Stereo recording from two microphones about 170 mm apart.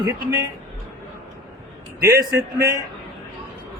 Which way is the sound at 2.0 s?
15° right (ahead or behind).